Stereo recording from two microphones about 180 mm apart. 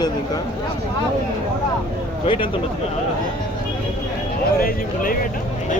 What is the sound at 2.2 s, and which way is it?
Speech, 30° left (ahead or behind).